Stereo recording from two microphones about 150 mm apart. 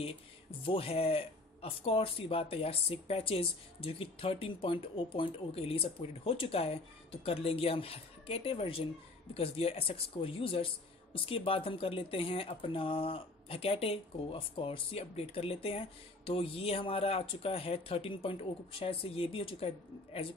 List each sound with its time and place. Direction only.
0.0 s speech: 40° left (ahead or behind)